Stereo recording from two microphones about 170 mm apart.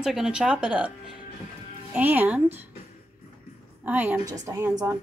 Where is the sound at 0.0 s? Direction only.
5° right (ahead or behind).